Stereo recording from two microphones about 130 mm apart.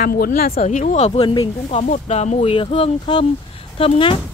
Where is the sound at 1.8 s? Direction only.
65° left (ahead or behind); by 4.2 s 45° left (ahead or behind).